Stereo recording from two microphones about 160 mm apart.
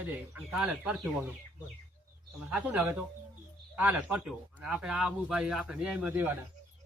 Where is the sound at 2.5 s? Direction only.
10° right (ahead or behind).